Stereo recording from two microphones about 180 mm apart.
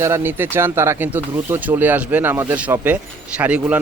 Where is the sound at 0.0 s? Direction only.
15° right (ahead or behind).